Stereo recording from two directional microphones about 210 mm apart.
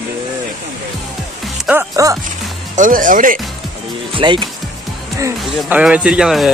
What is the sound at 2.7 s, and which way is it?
Speech, 40° right (ahead or behind).